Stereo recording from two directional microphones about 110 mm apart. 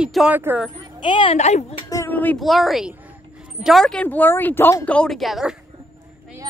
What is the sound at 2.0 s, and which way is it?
Speech, 15° left (ahead or behind).